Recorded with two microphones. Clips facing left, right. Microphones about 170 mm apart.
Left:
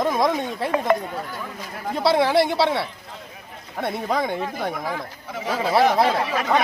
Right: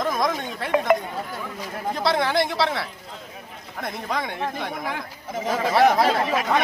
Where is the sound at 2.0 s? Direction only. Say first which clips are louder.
Left 4 dB; 5° left (ahead or behind).